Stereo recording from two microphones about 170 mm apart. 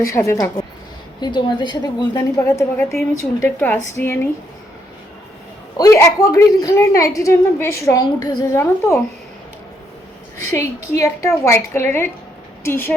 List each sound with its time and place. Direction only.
0.0 s a woman's voice: 15° left (ahead or behind)
5.7 s a woman's voice: 20° left (ahead or behind)
10.5 s a woman's voice: 15° left (ahead or behind)